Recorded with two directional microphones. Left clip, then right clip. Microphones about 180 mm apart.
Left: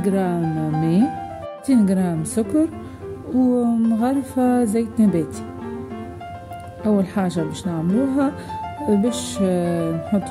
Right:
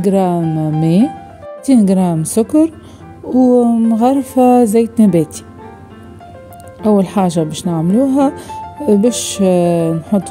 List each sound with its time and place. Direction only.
0.0 s speech: 40° right (ahead or behind)
6.8 s speech: 40° right (ahead or behind)